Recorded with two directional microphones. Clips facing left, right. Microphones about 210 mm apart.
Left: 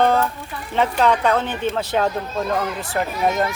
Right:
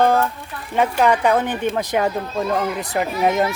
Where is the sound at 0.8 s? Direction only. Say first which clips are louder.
Right 1 dB; 10° right (ahead or behind).